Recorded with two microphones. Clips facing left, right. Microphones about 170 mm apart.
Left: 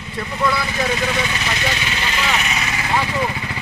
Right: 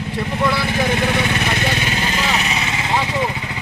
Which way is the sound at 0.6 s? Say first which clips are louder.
Right 3 dB; 55° right (ahead or behind).